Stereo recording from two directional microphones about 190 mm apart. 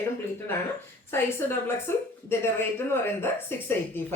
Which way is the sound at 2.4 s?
10° left (ahead or behind).